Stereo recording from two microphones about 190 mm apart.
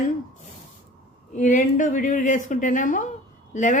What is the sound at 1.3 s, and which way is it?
A woman's voice, 40° left (ahead or behind).